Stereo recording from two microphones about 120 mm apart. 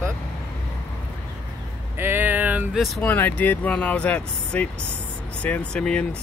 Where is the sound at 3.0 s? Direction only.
15° left (ahead or behind).